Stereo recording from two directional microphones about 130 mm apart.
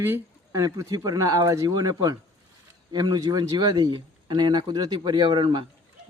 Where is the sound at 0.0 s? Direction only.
15° right (ahead or behind).